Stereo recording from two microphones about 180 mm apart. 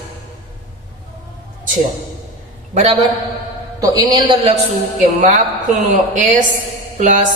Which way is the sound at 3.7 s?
20° right (ahead or behind).